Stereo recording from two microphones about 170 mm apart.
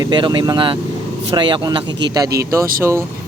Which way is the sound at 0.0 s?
25° right (ahead or behind).